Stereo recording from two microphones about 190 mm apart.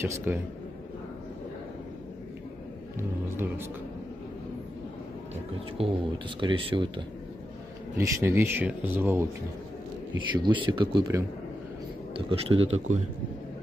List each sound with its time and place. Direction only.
0.0 s speech: 15° right (ahead or behind)
3.0 s speech: 10° right (ahead or behind)
5.8 s speech: 25° right (ahead or behind)
8.0 s speech: 15° right (ahead or behind)
10.3 s speech: 25° right (ahead or behind)
12.3 s speech: 30° right (ahead or behind)